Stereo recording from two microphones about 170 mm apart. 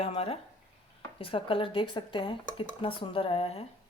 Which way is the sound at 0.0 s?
35° left (ahead or behind).